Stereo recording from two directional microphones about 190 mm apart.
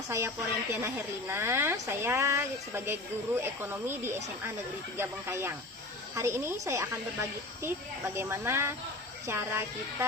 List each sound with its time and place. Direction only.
0.7 s speech: 15° right (ahead or behind)